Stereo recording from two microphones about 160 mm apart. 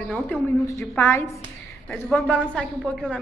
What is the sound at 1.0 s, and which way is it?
A woman's voice, 15° left (ahead or behind).